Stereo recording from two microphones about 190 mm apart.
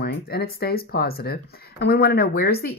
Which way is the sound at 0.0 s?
55° left (ahead or behind).